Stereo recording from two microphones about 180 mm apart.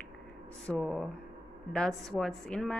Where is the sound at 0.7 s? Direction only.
5° left (ahead or behind).